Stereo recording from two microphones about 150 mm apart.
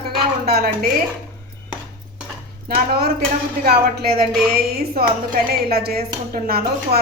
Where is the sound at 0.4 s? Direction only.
90° right.